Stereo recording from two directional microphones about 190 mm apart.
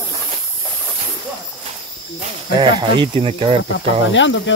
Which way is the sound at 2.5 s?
20° right (ahead or behind).